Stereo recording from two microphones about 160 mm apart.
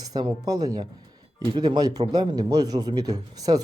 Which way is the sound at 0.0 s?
25° right (ahead or behind).